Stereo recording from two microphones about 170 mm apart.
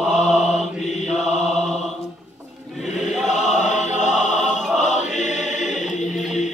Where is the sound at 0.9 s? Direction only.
40° left (ahead or behind).